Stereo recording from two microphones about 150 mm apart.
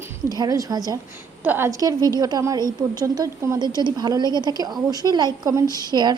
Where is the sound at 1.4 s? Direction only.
15° right (ahead or behind).